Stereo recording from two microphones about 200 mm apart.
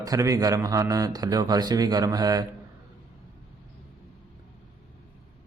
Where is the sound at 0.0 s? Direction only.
15° right (ahead or behind).